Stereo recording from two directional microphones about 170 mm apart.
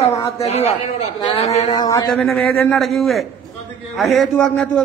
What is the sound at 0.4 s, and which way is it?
Speech, 35° left (ahead or behind).